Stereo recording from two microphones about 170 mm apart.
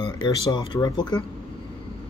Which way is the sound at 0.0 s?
25° left (ahead or behind).